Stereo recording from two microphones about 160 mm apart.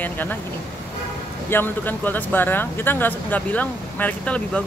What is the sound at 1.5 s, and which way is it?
Speech, 10° left (ahead or behind).